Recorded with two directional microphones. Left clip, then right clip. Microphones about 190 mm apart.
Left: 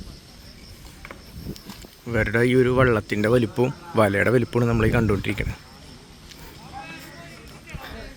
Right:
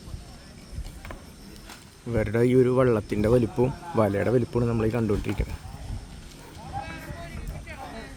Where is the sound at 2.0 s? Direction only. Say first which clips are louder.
Left 3 dB; centre (ahead or behind).